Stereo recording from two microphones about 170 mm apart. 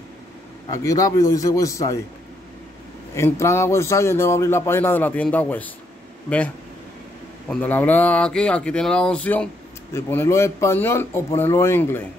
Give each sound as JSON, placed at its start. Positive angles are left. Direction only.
{"t": 0.7, "sound": "a man's voice", "side_deg": 20}
{"t": 3.2, "sound": "speech", "side_deg": 15}
{"t": 7.4, "sound": "speech", "side_deg": 10}